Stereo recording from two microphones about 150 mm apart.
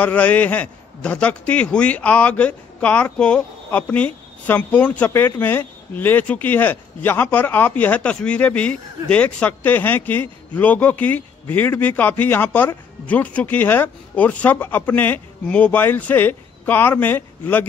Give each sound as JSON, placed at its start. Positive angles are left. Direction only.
{"t": 0.0, "sound": "a man's voice", "side_deg": 10}